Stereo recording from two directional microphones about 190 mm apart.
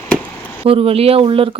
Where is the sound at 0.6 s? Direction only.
30° right (ahead or behind).